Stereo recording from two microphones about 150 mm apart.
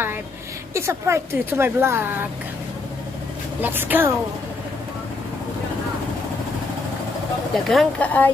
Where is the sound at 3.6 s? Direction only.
15° right (ahead or behind).